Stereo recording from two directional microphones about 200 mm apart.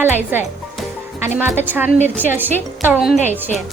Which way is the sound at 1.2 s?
10° right (ahead or behind).